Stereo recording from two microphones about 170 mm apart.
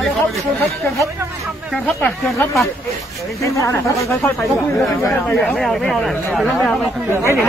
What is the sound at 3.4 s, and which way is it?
Speech, 20° left (ahead or behind).